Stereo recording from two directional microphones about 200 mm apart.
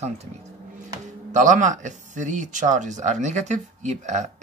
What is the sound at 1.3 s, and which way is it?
Speech, 40° right (ahead or behind).